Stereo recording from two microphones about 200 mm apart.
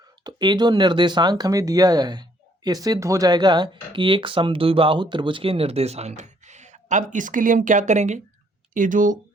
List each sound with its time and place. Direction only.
0.3 s speech: 20° right (ahead or behind); by 9.1 s 40° right (ahead or behind)